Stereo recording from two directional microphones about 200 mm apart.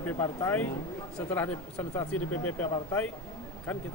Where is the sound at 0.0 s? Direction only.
10° left (ahead or behind).